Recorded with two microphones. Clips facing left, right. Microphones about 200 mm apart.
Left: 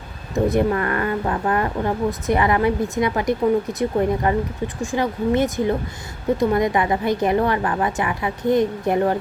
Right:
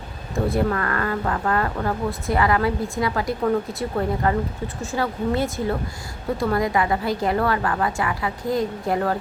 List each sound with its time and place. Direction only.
0.3 s speech: 20° left (ahead or behind)